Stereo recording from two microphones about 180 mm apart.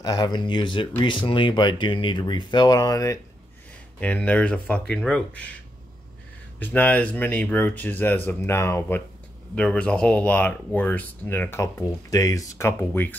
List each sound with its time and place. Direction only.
0.0 s speech: 20° left (ahead or behind)
4.0 s speech: 5° left (ahead or behind)
6.6 s speech: 10° left (ahead or behind)